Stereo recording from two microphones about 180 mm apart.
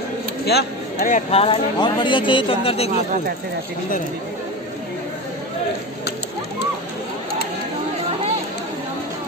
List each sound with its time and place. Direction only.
0.5 s speech: 60° left (ahead or behind)
1.3 s a man's voice: 35° left (ahead or behind)